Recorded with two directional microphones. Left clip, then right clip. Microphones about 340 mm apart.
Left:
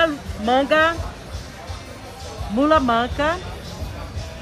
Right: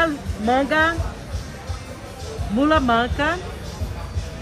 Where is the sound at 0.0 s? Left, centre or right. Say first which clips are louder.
Left 1 dB; left.